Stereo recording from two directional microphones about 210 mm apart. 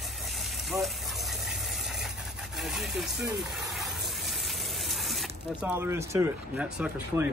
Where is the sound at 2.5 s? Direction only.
Centre (ahead or behind).